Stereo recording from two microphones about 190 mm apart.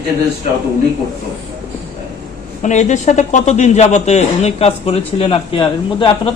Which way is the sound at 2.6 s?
40° left (ahead or behind).